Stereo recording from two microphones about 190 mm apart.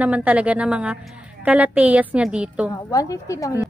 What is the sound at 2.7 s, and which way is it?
Speech, 15° left (ahead or behind).